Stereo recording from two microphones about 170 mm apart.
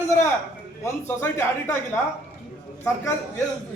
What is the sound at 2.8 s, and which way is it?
Speech, 15° left (ahead or behind).